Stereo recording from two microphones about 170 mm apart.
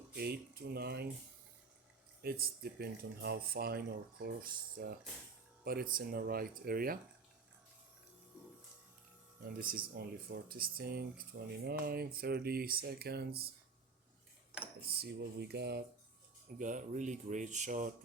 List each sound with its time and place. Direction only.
0.2 s speech: 65° right (ahead or behind)
2.2 s speech: 65° right (ahead or behind)
9.5 s speech: 55° right (ahead or behind)
14.5 s cutlery: 5° right (ahead or behind)
14.8 s speech: 70° right (ahead or behind)
16.5 s speech: 50° right (ahead or behind)